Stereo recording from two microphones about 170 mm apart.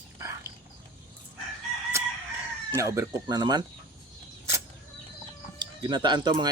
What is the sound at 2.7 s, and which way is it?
Speech, 20° right (ahead or behind).